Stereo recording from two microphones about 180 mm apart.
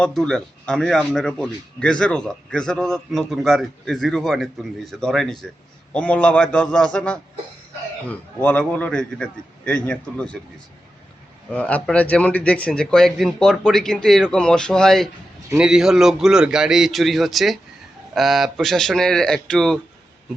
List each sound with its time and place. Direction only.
0.0 s a man's voice: 5° left (ahead or behind)
11.5 s speech: 5° left (ahead or behind)